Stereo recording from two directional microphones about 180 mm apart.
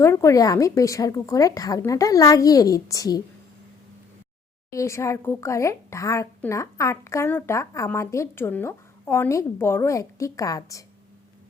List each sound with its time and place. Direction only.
0.0 s speech: 15° left (ahead or behind)
4.7 s speech: 15° left (ahead or behind)